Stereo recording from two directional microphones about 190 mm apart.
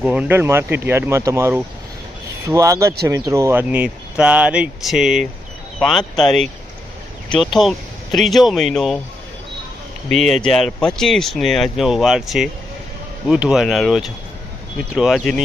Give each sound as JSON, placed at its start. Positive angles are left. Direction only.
{"t": 0.0, "sound": "speech", "side_deg": -5}
{"t": 10.1, "sound": "speech", "side_deg": 0}